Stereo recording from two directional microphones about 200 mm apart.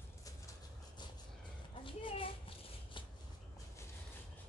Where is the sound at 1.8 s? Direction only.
25° left (ahead or behind).